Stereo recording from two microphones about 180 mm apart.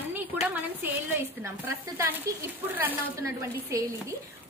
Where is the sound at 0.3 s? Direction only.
10° right (ahead or behind).